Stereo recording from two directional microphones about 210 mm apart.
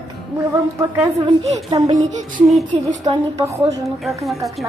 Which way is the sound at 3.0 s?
15° right (ahead or behind).